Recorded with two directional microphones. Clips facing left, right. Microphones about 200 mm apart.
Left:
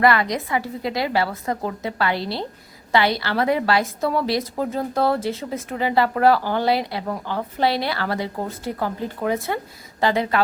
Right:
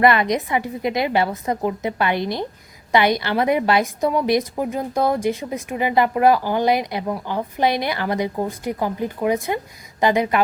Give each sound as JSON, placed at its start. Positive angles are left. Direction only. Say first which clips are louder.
{"t": 0.0, "sound": "a woman's voice", "louder": "right 2 dB", "side_deg": -20}